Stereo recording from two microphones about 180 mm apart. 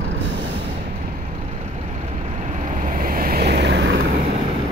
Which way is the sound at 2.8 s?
50° right (ahead or behind).